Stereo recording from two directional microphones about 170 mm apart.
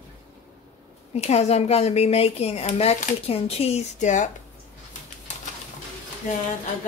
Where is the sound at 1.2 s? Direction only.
40° left (ahead or behind).